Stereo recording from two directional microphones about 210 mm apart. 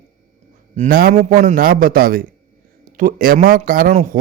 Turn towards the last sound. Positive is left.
turn(degrees=-40)  # may be behind; listen again after turning